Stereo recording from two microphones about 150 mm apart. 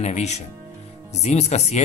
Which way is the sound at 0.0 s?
50° left (ahead or behind).